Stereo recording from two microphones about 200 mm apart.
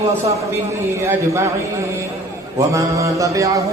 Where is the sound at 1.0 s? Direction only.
15° right (ahead or behind).